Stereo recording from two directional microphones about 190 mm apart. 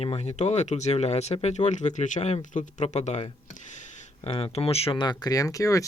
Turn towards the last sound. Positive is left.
turn(degrees=15)  # may be behind; listen again after turning